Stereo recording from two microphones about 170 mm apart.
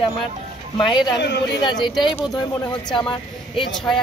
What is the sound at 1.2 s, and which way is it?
Speech, 90° left.